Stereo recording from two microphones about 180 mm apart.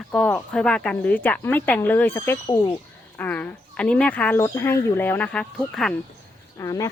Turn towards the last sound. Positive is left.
turn(degrees=15)  # may be behind; listen again after turning